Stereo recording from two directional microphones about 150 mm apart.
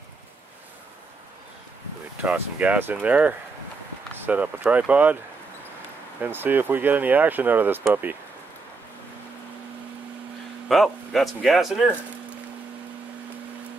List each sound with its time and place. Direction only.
2.2 s speech: 10° right (ahead or behind)
6.2 s speech: 15° right (ahead or behind)
10.7 s speech: centre (ahead or behind)